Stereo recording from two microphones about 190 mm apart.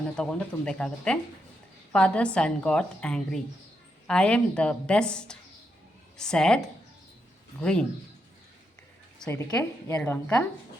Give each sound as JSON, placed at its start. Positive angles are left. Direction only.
{"t": 0.2, "sound": "a woman's voice", "side_deg": 5}
{"t": 7.6, "sound": "a woman's voice", "side_deg": 5}
{"t": 9.1, "sound": "a woman's voice", "side_deg": 10}